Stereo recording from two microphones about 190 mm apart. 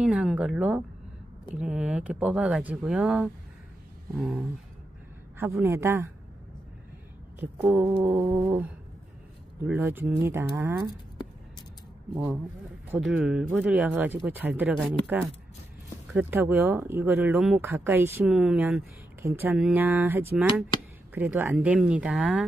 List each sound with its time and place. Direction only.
0.0 s speech: 5° right (ahead or behind)
5.4 s speech: 15° right (ahead or behind)
7.3 s speech: 10° right (ahead or behind)
9.7 s speech: 10° right (ahead or behind)
12.1 s speech: 15° right (ahead or behind)